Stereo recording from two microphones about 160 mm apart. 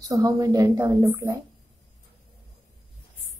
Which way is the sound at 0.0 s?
20° right (ahead or behind).